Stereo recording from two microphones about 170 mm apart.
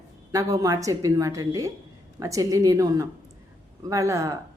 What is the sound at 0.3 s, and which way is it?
A woman's voice, 20° right (ahead or behind).